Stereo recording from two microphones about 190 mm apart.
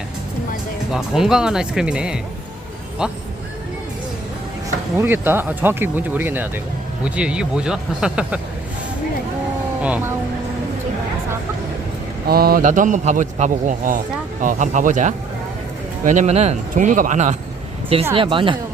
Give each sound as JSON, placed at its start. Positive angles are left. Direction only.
{"t": 0.9, "sound": "speech", "side_deg": -5}
{"t": 4.9, "sound": "speech", "side_deg": -10}
{"t": 9.8, "sound": "speech", "side_deg": -10}
{"t": 12.3, "sound": "a man's voice", "side_deg": -55}
{"t": 18.1, "sound": "speech", "side_deg": -25}